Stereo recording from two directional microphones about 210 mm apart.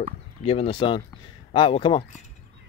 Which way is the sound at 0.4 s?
30° left (ahead or behind).